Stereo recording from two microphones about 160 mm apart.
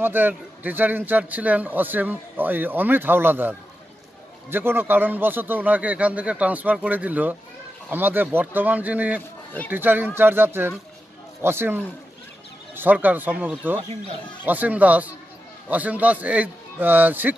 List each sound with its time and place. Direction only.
0.0 s speech: 10° right (ahead or behind)